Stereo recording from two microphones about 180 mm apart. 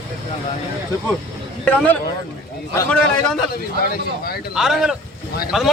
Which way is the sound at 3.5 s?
55° left (ahead or behind).